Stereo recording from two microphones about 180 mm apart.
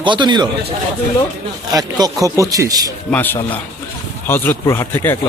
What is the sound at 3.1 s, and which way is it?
Speech, 10° left (ahead or behind).